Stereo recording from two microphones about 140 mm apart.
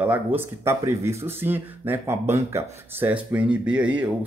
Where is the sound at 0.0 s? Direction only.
10° right (ahead or behind).